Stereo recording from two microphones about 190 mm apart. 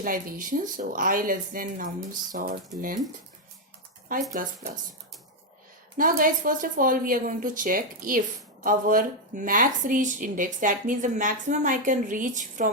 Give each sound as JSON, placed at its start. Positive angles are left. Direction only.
{"t": 0.0, "sound": "a woman's voice", "side_deg": -45}
{"t": 4.4, "sound": "a woman's voice", "side_deg": -45}
{"t": 6.0, "sound": "a woman's voice", "side_deg": -45}